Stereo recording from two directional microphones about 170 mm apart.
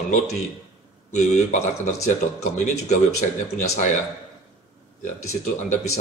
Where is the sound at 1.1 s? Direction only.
45° left (ahead or behind).